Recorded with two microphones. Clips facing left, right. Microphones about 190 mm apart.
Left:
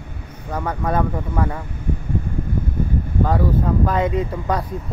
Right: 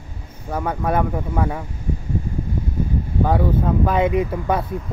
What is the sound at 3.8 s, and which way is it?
Speech, 15° right (ahead or behind).